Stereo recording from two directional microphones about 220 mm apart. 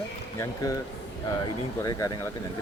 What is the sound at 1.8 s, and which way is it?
Speech, 15° left (ahead or behind).